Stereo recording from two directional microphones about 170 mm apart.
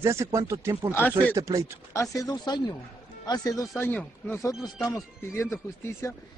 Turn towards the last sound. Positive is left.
turn(degrees=15)  # may be behind; listen again after turning